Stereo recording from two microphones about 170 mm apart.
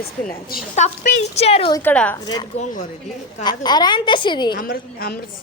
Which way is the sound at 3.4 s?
25° left (ahead or behind).